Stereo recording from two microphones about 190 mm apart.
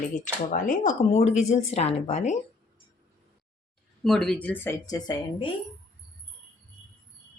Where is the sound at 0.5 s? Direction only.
45° left (ahead or behind).